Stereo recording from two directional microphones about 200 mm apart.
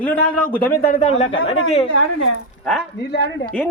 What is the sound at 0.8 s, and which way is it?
Speech, 40° left (ahead or behind).